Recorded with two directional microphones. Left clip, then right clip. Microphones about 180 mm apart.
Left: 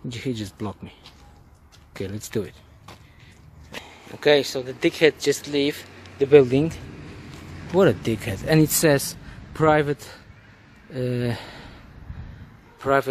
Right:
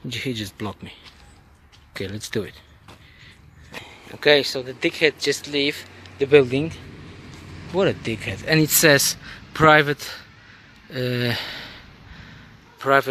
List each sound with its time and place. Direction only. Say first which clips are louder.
0.1 s speech: right 3 dB; 5° left (ahead or behind)
2.0 s speech: right 1 dB; 5° left (ahead or behind)
3.8 s speech: right 2 dB; 5° left (ahead or behind)
4.7 s speech: left 2 dB; 30° left (ahead or behind)
8.5 s speech: right 3 dB; 10° left (ahead or behind)